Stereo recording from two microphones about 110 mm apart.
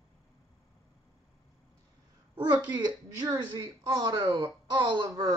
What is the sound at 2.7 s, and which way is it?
Speech, 40° right (ahead or behind).